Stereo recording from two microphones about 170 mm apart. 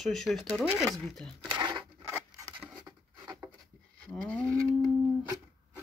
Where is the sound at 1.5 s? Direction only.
30° right (ahead or behind).